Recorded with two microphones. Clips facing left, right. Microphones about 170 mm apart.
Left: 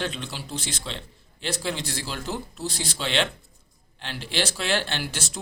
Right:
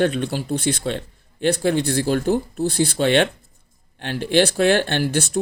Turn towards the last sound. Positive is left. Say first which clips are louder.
# right 10 dB
turn(degrees=-55)  # may be behind; listen again after turning